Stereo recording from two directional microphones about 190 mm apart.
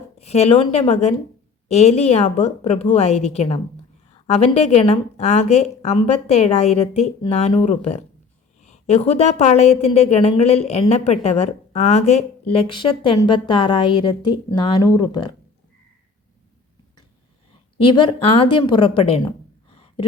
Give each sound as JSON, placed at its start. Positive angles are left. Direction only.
{"t": 0.2, "sound": "a woman's voice", "side_deg": 35}
{"t": 17.8, "sound": "a woman's voice", "side_deg": 25}
{"t": 19.7, "sound": "a sound", "side_deg": 30}